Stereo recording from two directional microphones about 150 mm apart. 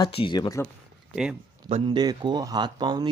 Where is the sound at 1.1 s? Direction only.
5° right (ahead or behind).